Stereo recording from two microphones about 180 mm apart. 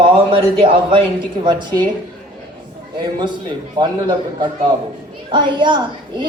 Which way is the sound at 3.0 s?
25° right (ahead or behind).